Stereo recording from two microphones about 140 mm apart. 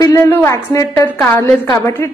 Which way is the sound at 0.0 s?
25° left (ahead or behind).